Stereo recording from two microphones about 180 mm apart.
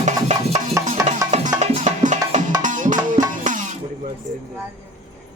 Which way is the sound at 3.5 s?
45° right (ahead or behind).